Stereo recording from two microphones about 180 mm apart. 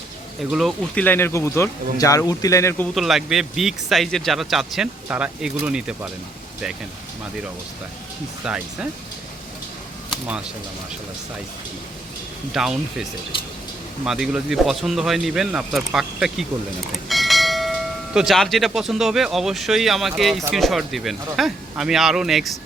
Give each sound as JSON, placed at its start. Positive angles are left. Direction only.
{"t": 0.5, "sound": "speech", "side_deg": 0}
{"t": 2.9, "sound": "speech", "side_deg": 0}
{"t": 8.4, "sound": "speech", "side_deg": -5}
{"t": 10.1, "sound": "a sound", "side_deg": -5}
{"t": 12.5, "sound": "speech", "side_deg": 0}